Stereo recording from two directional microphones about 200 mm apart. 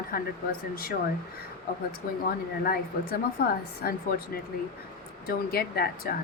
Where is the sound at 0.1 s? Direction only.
45° left (ahead or behind).